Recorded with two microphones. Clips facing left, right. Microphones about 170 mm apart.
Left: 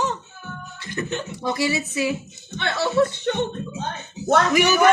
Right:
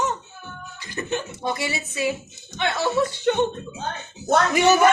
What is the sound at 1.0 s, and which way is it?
Speech, 25° right (ahead or behind).